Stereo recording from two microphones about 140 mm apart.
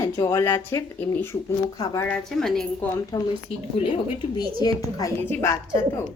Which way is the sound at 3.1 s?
25° left (ahead or behind).